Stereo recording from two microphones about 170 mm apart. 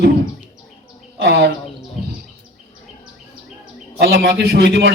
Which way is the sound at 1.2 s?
80° right.